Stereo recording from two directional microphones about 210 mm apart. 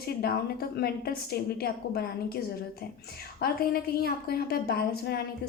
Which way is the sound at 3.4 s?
45° left (ahead or behind).